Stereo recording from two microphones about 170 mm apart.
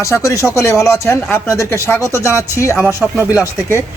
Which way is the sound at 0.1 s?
15° left (ahead or behind).